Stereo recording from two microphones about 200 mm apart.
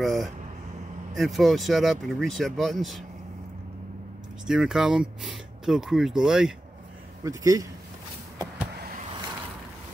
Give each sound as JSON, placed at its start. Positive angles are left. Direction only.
{"t": 0.0, "sound": "speech", "side_deg": 0}
{"t": 4.5, "sound": "speech", "side_deg": -5}
{"t": 7.2, "sound": "speech", "side_deg": -15}